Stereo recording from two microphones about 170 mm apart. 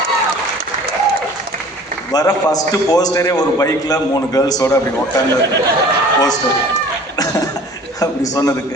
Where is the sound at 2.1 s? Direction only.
20° left (ahead or behind).